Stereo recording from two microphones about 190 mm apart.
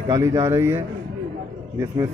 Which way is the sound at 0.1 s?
15° right (ahead or behind).